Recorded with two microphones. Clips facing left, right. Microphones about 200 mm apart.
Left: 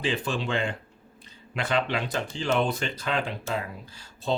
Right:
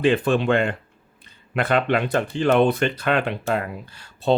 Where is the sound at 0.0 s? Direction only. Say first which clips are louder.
Right 10 dB; 55° right (ahead or behind).